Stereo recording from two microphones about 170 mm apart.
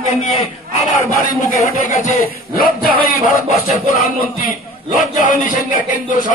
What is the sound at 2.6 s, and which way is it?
Speech, 55° left (ahead or behind).